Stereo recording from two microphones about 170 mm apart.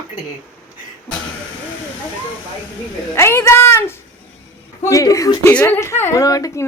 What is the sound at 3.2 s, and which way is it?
A woman's voice, 15° left (ahead or behind).